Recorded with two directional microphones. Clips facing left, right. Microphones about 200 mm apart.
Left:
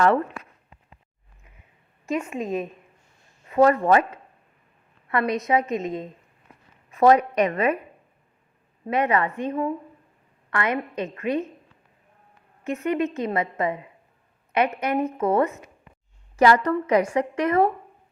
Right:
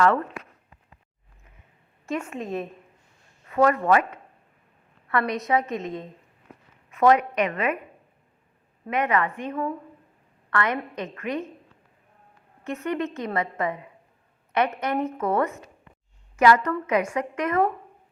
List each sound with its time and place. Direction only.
0.0 s a woman's voice: 25° left (ahead or behind)
2.1 s a woman's voice: 10° left (ahead or behind)
3.5 s a woman's voice: 30° left (ahead or behind)
6.9 s a woman's voice: 35° left (ahead or behind)
8.9 s a woman's voice: 30° left (ahead or behind)
12.6 s a woman's voice: 20° left (ahead or behind)
16.4 s a woman's voice: 30° left (ahead or behind)